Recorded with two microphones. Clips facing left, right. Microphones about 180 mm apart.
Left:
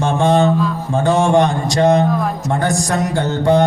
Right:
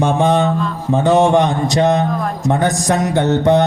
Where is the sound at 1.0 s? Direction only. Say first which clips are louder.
Right 1 dB; 20° right (ahead or behind).